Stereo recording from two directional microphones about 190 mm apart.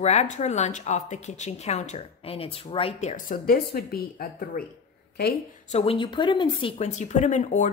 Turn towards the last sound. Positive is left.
turn(degrees=40)  # may be behind; listen again after turning